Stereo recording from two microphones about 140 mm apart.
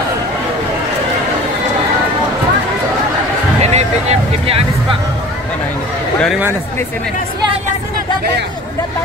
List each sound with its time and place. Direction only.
3.6 s vehicle: 50° right (ahead or behind)